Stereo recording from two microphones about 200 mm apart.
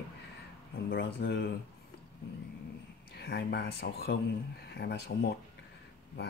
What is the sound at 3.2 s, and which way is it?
Speech, 55° left (ahead or behind).